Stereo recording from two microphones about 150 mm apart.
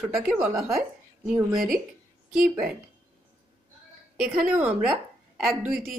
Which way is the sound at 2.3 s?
Centre (ahead or behind).